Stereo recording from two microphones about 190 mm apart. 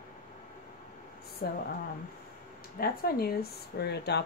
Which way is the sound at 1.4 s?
50° left (ahead or behind).